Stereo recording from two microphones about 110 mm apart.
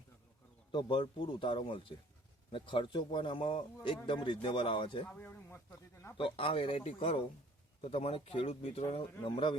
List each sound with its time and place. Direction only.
0.7 s speech: 50° left (ahead or behind)
5.0 s speech: 15° left (ahead or behind)
6.1 s speech: 55° left (ahead or behind)
9.2 s speech: 50° left (ahead or behind)